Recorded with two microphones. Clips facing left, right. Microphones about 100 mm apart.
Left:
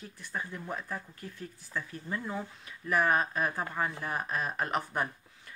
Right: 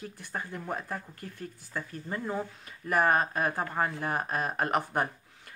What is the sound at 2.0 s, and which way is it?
Speech, 30° right (ahead or behind).